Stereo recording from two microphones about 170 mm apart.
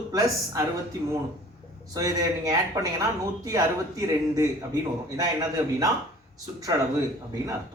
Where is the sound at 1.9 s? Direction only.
20° right (ahead or behind).